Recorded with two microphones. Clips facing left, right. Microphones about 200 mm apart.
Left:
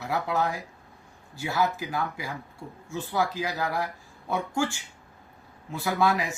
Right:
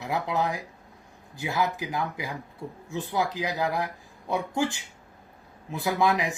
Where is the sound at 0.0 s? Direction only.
15° right (ahead or behind).